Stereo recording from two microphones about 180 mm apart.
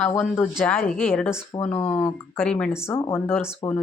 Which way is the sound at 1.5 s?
25° left (ahead or behind).